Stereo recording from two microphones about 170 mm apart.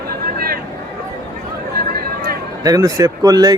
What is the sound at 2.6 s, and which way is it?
Speech, 20° right (ahead or behind).